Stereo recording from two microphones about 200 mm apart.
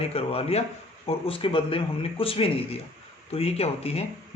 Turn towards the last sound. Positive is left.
turn(degrees=30)  # may be behind; listen again after turning